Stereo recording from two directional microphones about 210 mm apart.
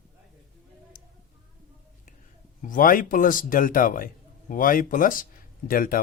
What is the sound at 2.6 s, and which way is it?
A man's voice, 40° left (ahead or behind).